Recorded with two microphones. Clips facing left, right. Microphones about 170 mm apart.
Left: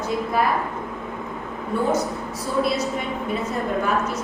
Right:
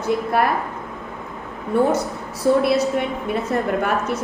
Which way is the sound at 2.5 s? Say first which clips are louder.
Right 8 dB; 60° right (ahead or behind).